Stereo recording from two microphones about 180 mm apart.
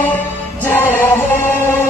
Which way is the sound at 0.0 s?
10° left (ahead or behind).